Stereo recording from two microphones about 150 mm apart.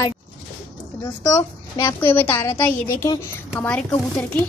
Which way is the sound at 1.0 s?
20° left (ahead or behind).